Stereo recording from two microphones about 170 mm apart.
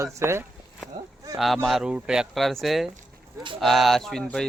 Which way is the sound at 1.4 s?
Centre (ahead or behind).